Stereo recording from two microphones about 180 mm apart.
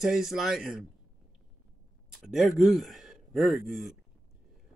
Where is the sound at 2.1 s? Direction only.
Centre (ahead or behind).